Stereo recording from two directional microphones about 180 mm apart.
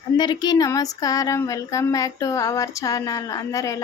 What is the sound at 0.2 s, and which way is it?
Speech, 25° left (ahead or behind).